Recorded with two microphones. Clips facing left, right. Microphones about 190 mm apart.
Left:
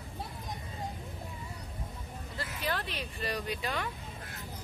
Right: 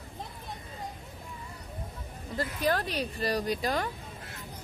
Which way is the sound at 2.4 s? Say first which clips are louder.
Right 7 dB; 45° right (ahead or behind).